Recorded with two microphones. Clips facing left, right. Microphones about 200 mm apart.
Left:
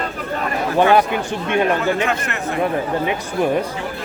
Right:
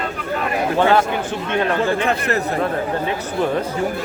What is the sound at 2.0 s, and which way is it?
Speech, 35° right (ahead or behind).